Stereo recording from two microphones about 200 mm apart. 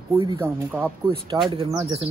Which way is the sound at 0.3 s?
10° right (ahead or behind).